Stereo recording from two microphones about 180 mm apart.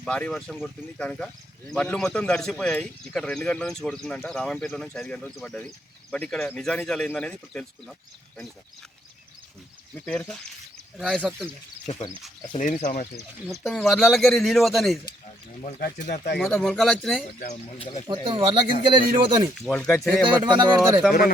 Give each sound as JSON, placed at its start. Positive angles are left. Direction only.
{"t": 0.0, "sound": "a man's voice", "side_deg": 5}
{"t": 9.9, "sound": "a man's voice", "side_deg": 10}
{"t": 12.5, "sound": "speech", "side_deg": 45}
{"t": 13.5, "sound": "a man's voice", "side_deg": 0}
{"t": 15.8, "sound": "speech", "side_deg": 45}
{"t": 16.4, "sound": "a man's voice", "side_deg": 0}
{"t": 17.5, "sound": "speech", "side_deg": 35}
{"t": 18.1, "sound": "speech", "side_deg": -25}
{"t": 19.5, "sound": "a man's voice", "side_deg": 0}
{"t": 20.4, "sound": "speech", "side_deg": -25}